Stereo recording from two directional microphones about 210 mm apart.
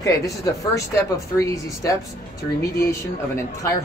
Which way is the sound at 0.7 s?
15° left (ahead or behind).